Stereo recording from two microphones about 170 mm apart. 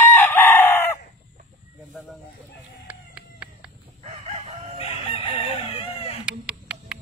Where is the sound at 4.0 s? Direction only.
35° right (ahead or behind).